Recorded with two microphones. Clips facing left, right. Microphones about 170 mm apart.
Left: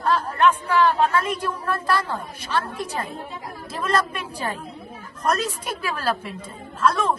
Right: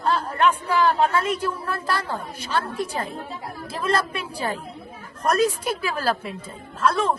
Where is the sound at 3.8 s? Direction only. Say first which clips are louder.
Even; 10° right (ahead or behind).